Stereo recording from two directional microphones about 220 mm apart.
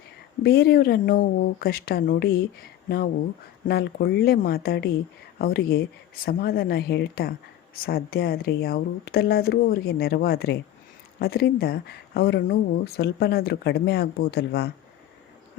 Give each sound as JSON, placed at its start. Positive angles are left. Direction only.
{"t": 0.4, "sound": "speech", "side_deg": 45}
{"t": 3.7, "sound": "speech", "side_deg": 45}